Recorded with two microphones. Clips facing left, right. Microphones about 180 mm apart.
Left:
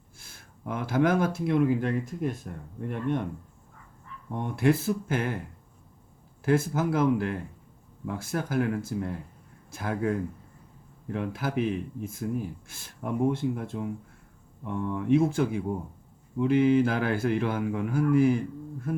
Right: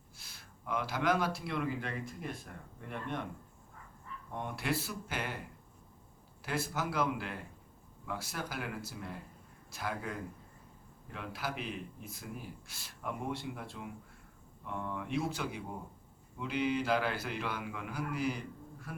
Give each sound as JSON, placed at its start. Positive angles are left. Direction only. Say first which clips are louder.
{"t": 0.2, "sound": "speech", "louder": "left 9 dB", "side_deg": 50}
{"t": 4.4, "sound": "speech", "louder": "left 11 dB", "side_deg": 50}
{"t": 6.4, "sound": "speech", "louder": "left 11 dB", "side_deg": 50}
{"t": 11.1, "sound": "speech", "louder": "left 10 dB", "side_deg": 50}
{"t": 14.9, "sound": "speech", "louder": "left 14 dB", "side_deg": 50}